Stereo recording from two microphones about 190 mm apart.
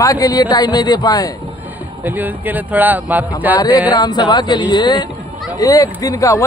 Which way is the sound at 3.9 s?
20° left (ahead or behind).